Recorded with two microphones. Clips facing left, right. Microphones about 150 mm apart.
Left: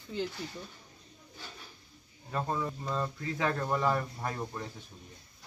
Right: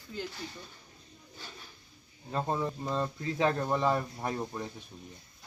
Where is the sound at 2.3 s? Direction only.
30° right (ahead or behind).